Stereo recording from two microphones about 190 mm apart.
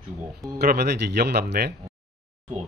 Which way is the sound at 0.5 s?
60° right (ahead or behind).